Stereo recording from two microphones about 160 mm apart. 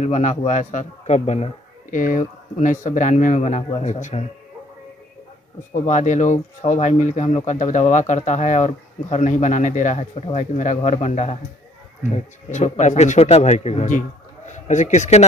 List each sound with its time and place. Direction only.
0.0 s speech: 50° left (ahead or behind)
5.7 s speech: 50° left (ahead or behind)